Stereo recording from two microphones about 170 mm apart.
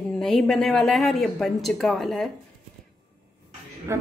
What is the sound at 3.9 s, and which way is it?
Speech, 15° right (ahead or behind).